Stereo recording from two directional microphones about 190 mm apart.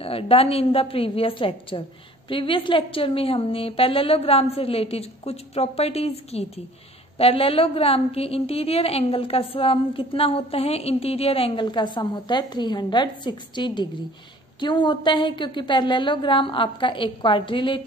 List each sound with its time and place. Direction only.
0.0 s a woman's voice: 30° left (ahead or behind)